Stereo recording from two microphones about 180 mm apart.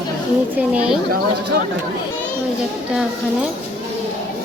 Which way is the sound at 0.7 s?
5° right (ahead or behind).